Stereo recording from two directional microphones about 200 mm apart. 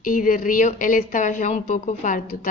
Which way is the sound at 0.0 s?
40° left (ahead or behind).